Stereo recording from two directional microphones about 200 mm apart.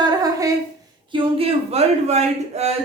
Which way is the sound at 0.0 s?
20° right (ahead or behind).